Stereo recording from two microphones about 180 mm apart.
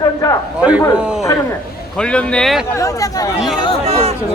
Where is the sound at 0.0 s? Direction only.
20° left (ahead or behind).